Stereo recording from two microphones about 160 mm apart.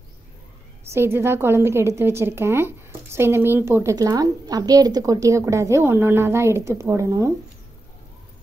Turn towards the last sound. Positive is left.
turn(degrees=-20)  # may be behind; listen again after turning